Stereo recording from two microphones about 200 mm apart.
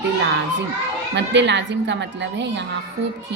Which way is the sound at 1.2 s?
60° right (ahead or behind).